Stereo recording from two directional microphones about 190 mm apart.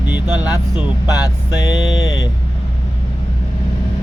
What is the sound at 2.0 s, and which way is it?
Vehicle, 20° left (ahead or behind).